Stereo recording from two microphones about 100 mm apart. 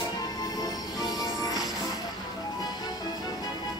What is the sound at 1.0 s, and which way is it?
Music, 40° left (ahead or behind).